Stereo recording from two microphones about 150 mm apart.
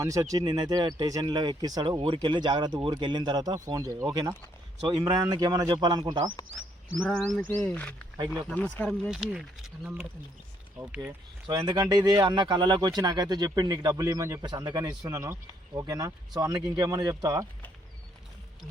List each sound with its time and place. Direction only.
0.0 s speech: 20° right (ahead or behind)
7.0 s speech: 5° left (ahead or behind)
8.9 s speech: 5° right (ahead or behind)
11.4 s speech: 30° right (ahead or behind)